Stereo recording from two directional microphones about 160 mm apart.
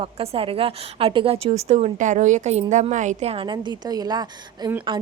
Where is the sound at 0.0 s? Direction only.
35° right (ahead or behind).